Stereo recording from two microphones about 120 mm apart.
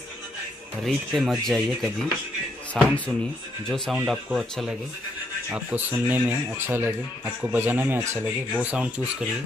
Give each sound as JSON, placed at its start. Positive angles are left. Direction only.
{"t": 0.8, "sound": "speech", "side_deg": 0}
{"t": 5.5, "sound": "speech", "side_deg": -15}
{"t": 8.5, "sound": "speech", "side_deg": -10}